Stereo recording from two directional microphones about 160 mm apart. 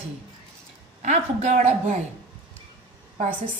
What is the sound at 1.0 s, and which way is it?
A woman's voice, 45° right (ahead or behind).